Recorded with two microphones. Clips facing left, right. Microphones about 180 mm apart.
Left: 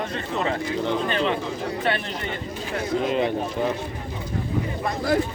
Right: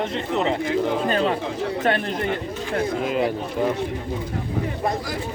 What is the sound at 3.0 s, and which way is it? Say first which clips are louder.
Speech: left 1 dB; 5° right (ahead or behind).